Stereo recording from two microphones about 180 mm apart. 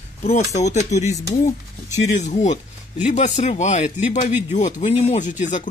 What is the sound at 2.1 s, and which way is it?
Speech, 40° left (ahead or behind).